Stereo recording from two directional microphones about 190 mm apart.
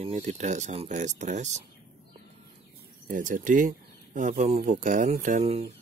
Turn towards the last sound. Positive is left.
turn(degrees=-35)  # may be behind; listen again after turning